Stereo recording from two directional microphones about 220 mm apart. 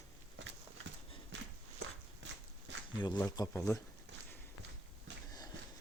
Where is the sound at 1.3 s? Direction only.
55° right (ahead or behind).